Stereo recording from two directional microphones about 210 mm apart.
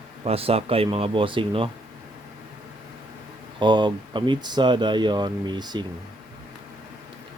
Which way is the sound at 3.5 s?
20° right (ahead or behind).